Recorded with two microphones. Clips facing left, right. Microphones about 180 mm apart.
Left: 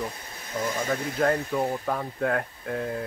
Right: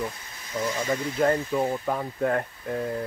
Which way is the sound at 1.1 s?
5° right (ahead or behind).